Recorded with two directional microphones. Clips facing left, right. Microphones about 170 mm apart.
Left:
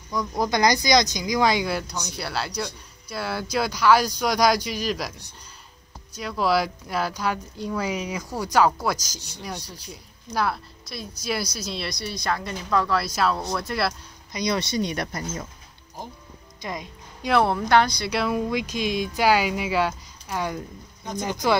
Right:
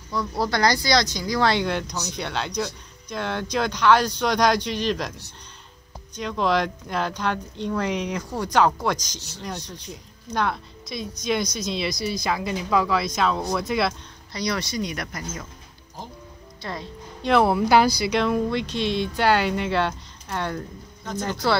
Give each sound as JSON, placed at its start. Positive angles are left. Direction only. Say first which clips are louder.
{"t": 0.4, "sound": "speech", "louder": "left 1 dB", "side_deg": 15}
{"t": 6.1, "sound": "speech", "louder": "even", "side_deg": 5}
{"t": 14.3, "sound": "speech", "louder": "left 2 dB", "side_deg": 20}
{"t": 16.6, "sound": "a woman's voice", "louder": "even", "side_deg": 15}
{"t": 17.4, "sound": "speech", "louder": "right 2 dB", "side_deg": -5}